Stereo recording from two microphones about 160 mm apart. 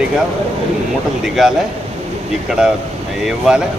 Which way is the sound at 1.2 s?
Centre (ahead or behind).